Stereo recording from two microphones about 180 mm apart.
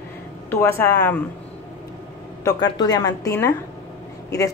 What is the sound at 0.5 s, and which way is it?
Speech, 15° left (ahead or behind).